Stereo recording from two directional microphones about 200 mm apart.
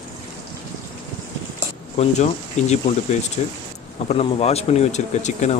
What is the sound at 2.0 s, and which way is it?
Speech, 35° left (ahead or behind).